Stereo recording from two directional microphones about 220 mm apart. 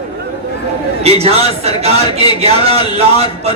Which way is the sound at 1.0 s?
25° right (ahead or behind).